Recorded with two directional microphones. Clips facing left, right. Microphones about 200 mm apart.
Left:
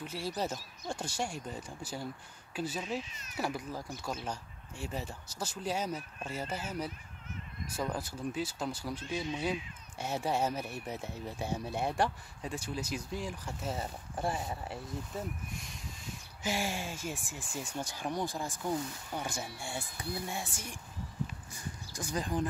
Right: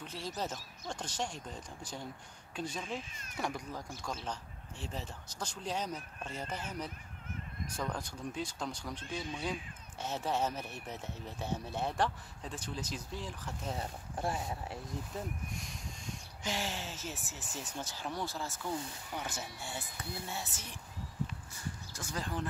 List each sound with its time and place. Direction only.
0.0 s speech: 10° left (ahead or behind)
3.0 s speech: 50° right (ahead or behind)
3.3 s speech: 5° left (ahead or behind)